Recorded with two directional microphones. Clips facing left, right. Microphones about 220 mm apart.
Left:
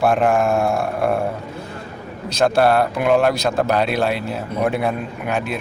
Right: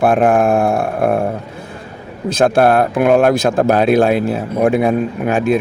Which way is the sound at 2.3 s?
50° right (ahead or behind).